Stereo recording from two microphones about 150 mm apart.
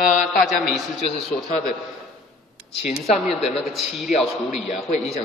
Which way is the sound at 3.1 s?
Centre (ahead or behind).